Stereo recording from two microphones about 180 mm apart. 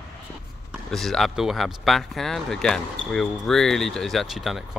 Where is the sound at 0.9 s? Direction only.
Centre (ahead or behind).